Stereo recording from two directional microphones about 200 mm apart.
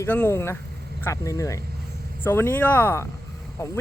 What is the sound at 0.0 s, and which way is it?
Speech, 10° left (ahead or behind).